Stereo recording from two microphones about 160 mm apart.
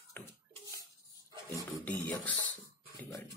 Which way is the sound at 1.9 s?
10° left (ahead or behind).